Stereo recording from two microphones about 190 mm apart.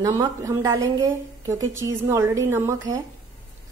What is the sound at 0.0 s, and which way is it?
A woman's voice, 20° right (ahead or behind).